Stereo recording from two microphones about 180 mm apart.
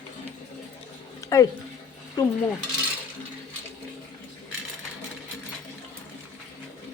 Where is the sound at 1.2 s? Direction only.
15° left (ahead or behind).